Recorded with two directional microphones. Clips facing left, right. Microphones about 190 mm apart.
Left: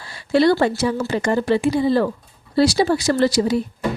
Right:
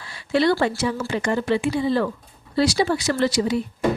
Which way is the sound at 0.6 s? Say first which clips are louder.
Left 3 dB; 40° left (ahead or behind).